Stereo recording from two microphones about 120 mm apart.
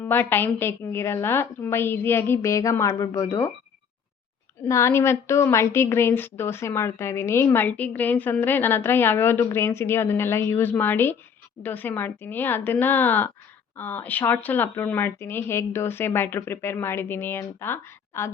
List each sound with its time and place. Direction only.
0.0 s a woman's voice: 15° left (ahead or behind)
4.7 s a woman's voice: 25° left (ahead or behind)